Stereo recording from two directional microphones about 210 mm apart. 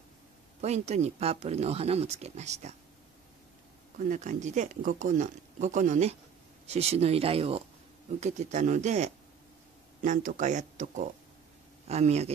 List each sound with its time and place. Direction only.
0.6 s speech: 30° right (ahead or behind)
4.0 s speech: 35° right (ahead or behind)